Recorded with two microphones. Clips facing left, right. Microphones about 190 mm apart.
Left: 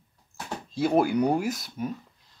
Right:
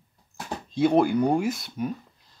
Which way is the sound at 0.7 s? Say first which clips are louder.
Right 2 dB; 5° left (ahead or behind).